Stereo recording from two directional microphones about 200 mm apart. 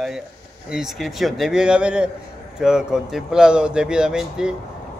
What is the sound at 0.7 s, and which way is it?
A man's voice, centre (ahead or behind).